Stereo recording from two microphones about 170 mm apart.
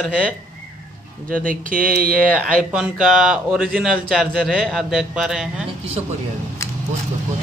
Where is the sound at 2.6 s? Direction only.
5° right (ahead or behind).